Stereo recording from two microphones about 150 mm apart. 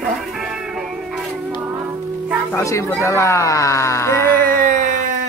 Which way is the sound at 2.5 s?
20° left (ahead or behind).